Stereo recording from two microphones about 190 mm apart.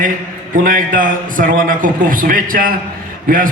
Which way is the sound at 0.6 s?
45° right (ahead or behind).